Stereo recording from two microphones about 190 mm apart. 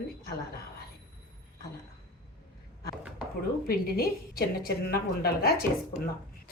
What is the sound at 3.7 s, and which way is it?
Speech, 50° left (ahead or behind).